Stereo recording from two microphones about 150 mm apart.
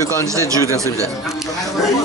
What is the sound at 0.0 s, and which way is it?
Speech, 20° left (ahead or behind).